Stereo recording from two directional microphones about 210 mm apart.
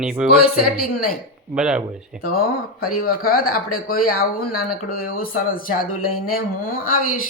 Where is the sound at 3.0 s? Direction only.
45° left (ahead or behind).